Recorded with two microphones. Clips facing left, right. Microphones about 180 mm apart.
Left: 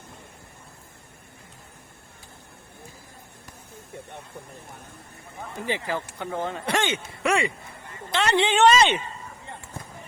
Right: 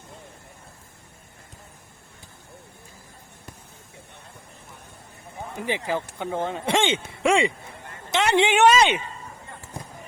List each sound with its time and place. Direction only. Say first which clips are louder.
5.5 s speech: right 2 dB; 15° right (ahead or behind)
9.7 s basketball bounce: right 4 dB; 15° right (ahead or behind)